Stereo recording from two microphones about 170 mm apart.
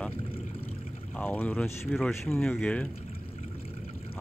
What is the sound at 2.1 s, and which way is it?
Speech, 15° left (ahead or behind).